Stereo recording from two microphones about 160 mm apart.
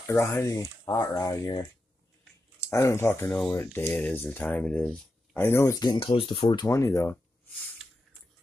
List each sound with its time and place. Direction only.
0.0 s speech: 15° left (ahead or behind)
2.7 s speech: 20° left (ahead or behind)
6.7 s speech: 20° left (ahead or behind)